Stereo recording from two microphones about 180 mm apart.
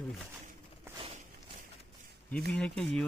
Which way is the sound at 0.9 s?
30° right (ahead or behind).